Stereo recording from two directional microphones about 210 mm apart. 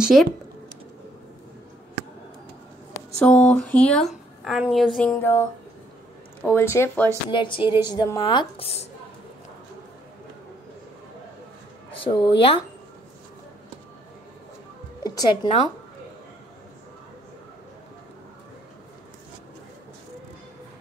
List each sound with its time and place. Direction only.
0.0 s speech: centre (ahead or behind)
3.2 s speech: 5° left (ahead or behind)
6.4 s speech: 10° left (ahead or behind)
7.2 s speech: 25° left (ahead or behind)
11.9 s speech: 25° left (ahead or behind)
15.0 s speech: 20° left (ahead or behind)